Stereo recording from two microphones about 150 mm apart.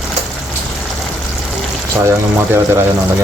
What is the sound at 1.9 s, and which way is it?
Speech, 15° right (ahead or behind).